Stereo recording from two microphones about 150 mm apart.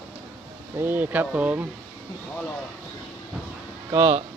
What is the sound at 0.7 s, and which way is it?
Speech, 15° right (ahead or behind).